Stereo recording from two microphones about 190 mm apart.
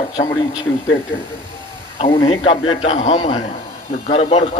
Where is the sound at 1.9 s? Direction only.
30° left (ahead or behind).